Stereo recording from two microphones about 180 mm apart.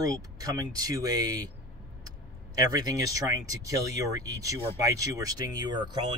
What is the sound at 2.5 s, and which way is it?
Speech, 20° right (ahead or behind).